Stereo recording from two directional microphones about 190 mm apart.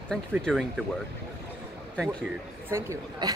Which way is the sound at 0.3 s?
Centre (ahead or behind).